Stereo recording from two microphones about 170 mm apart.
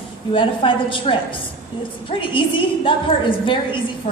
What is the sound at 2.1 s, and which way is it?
A woman's voice, 30° left (ahead or behind).